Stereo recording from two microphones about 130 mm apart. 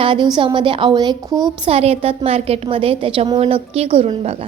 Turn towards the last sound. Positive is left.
turn(degrees=-50)  # may be behind; listen again after turning